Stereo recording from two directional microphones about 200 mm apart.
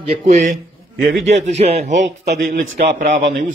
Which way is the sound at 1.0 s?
60° right (ahead or behind).